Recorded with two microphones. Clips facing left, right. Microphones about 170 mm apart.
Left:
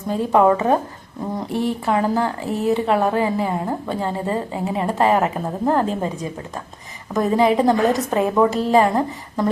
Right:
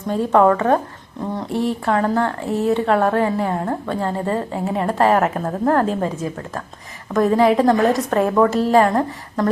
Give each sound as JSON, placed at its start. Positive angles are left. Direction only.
{"t": 0.1, "sound": "speech", "side_deg": 0}